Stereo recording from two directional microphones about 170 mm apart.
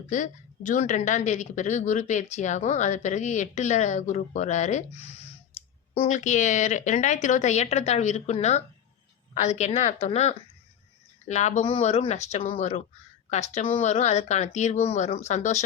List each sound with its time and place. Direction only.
0.1 s speech: 50° left (ahead or behind)
5.9 s speech: 45° left (ahead or behind)